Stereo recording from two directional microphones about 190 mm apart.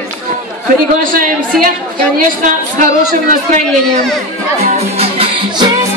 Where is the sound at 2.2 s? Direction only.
45° right (ahead or behind).